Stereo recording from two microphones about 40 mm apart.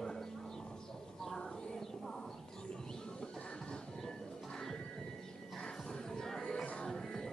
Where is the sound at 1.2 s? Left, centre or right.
Centre.